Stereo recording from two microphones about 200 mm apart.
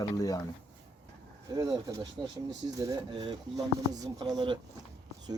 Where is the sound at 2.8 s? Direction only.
20° right (ahead or behind).